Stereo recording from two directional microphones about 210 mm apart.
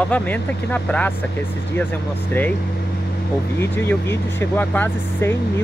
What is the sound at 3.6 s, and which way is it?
Speech, 10° left (ahead or behind).